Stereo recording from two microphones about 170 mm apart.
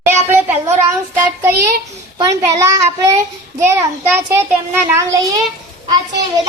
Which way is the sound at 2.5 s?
20° right (ahead or behind).